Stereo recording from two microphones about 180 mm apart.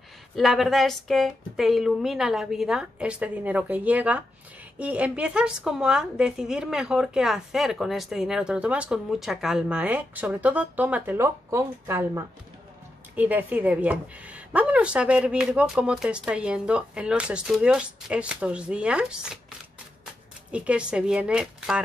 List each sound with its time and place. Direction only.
0.4 s a woman's voice: centre (ahead or behind)
20.5 s a woman's voice: 5° right (ahead or behind)